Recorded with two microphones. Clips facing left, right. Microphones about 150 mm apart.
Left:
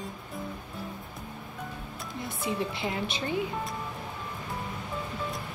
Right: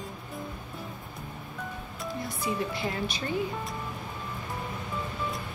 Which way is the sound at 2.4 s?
25° left (ahead or behind).